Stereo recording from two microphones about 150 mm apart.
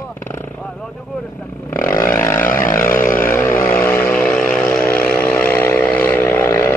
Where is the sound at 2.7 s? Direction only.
15° left (ahead or behind).